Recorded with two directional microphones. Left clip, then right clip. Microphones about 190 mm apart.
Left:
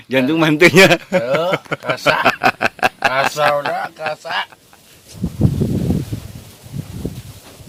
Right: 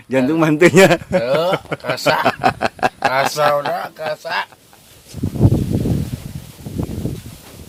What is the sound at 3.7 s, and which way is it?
Speech, 15° right (ahead or behind).